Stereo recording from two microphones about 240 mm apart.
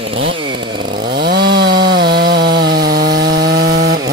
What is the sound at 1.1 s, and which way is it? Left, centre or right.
Chainsaw, right.